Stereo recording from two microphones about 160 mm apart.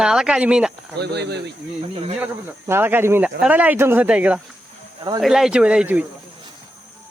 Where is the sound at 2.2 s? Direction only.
15° right (ahead or behind).